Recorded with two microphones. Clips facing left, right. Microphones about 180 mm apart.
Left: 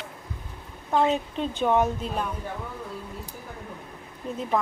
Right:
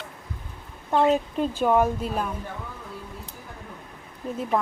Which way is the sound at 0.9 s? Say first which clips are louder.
Right 2 dB; centre (ahead or behind).